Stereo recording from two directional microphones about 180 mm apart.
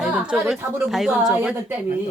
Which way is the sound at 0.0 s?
5° right (ahead or behind).